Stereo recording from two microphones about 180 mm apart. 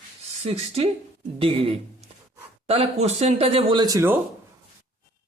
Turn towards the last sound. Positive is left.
turn(degrees=-15)  # may be behind; listen again after turning